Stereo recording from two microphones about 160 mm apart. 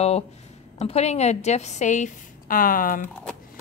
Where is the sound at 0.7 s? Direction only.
40° left (ahead or behind); by 3.0 s 60° left (ahead or behind).